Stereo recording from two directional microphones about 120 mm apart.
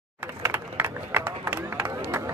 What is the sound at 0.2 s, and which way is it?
Run, 15° right (ahead or behind).